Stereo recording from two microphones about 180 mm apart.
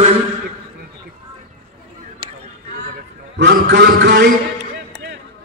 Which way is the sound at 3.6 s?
85° right.